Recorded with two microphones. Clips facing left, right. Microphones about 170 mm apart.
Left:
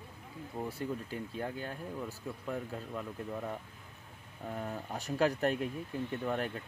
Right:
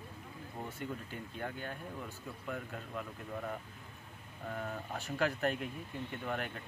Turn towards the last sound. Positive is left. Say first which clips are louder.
# left 4 dB
turn(degrees=35)  # may be behind; listen again after turning